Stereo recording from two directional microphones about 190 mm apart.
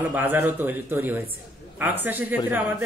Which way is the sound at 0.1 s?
10° right (ahead or behind).